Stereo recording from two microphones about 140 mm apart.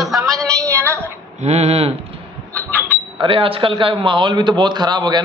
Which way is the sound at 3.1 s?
40° right (ahead or behind).